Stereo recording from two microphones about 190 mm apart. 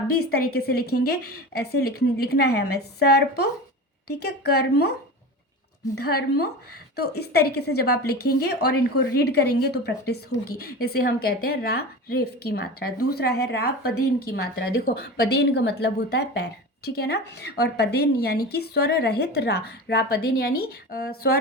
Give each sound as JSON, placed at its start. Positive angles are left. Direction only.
{"t": 0.1, "sound": "a woman's voice", "side_deg": 55}
{"t": 6.0, "sound": "a woman's voice", "side_deg": 55}